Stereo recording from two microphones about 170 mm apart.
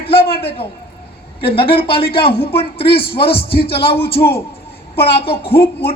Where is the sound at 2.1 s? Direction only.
70° left (ahead or behind).